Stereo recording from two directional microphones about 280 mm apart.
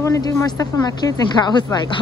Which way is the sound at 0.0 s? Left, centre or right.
Centre.